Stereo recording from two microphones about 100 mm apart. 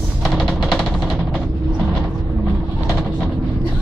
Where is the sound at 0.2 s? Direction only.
5° left (ahead or behind).